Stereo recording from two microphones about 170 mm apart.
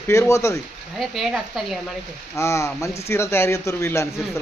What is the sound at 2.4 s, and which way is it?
Speech, 15° left (ahead or behind).